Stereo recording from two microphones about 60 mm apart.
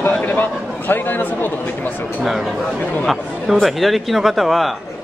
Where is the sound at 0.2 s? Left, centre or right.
Left.